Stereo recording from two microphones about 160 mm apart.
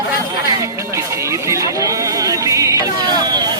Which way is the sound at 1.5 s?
20° right (ahead or behind).